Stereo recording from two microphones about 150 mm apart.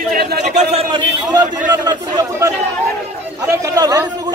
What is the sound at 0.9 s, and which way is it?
Speech, 30° right (ahead or behind).